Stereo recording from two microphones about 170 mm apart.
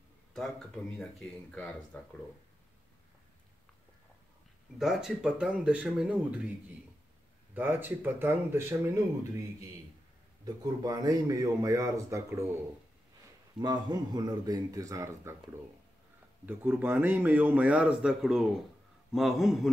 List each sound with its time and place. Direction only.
0.3 s speech: 5° left (ahead or behind)
4.7 s speech: centre (ahead or behind)
7.5 s a man's voice: 10° right (ahead or behind)
13.6 s a man's voice: 25° right (ahead or behind)
16.4 s a man's voice: 10° right (ahead or behind)